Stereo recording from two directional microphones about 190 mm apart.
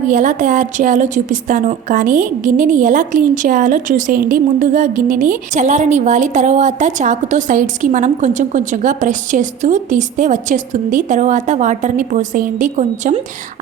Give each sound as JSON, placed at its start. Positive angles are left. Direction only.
{"t": 0.1, "sound": "a woman's voice", "side_deg": -40}